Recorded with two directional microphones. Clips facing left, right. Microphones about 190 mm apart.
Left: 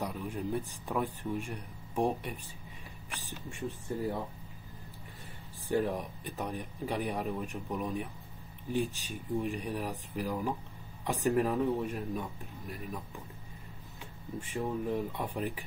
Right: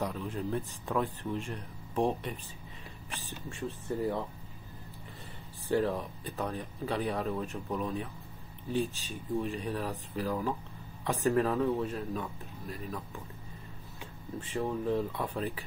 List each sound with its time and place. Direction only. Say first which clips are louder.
0.0 s speech: right 1 dB; 15° left (ahead or behind)
5.7 s speech: right 1 dB; 15° left (ahead or behind)
14.4 s speech: right 2 dB; 15° left (ahead or behind)